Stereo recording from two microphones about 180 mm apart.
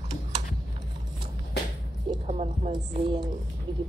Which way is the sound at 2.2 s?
40° right (ahead or behind).